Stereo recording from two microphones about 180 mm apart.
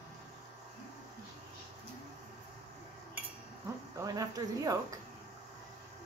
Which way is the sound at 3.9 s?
20° right (ahead or behind).